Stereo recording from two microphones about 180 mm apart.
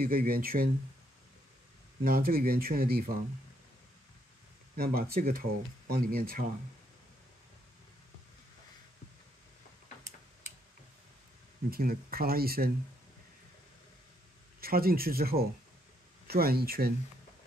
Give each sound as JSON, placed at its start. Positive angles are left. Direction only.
{"t": 0.0, "sound": "speech", "side_deg": -55}
{"t": 2.0, "sound": "speech", "side_deg": -55}
{"t": 4.7, "sound": "speech", "side_deg": -55}
{"t": 11.7, "sound": "speech", "side_deg": -55}
{"t": 14.6, "sound": "speech", "side_deg": -55}